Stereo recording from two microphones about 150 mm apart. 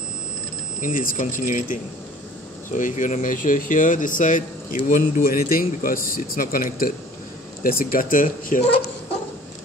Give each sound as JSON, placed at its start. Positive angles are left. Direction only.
{"t": 0.7, "sound": "speech", "side_deg": 60}